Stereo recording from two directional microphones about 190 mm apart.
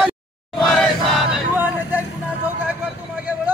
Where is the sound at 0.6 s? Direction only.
Centre (ahead or behind).